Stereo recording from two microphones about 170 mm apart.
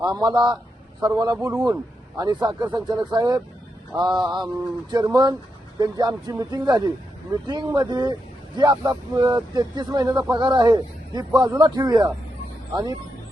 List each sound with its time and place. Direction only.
0.0 s speech: 25° right (ahead or behind)